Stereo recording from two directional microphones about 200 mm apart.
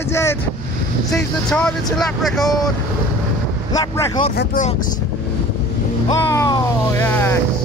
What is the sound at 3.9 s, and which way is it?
Speech, 20° left (ahead or behind).